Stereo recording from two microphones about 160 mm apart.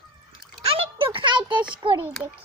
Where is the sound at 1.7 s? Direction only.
30° right (ahead or behind).